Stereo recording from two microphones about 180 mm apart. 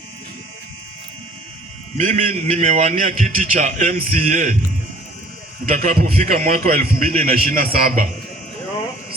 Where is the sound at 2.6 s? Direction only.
45° right (ahead or behind).